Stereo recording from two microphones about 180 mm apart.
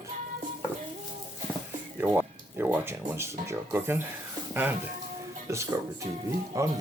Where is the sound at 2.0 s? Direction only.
10° right (ahead or behind).